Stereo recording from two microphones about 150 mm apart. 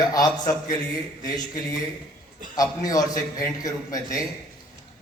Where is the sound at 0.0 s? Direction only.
25° left (ahead or behind).